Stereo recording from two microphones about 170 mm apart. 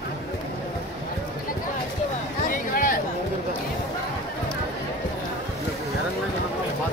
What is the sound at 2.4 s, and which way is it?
Music, 55° left (ahead or behind).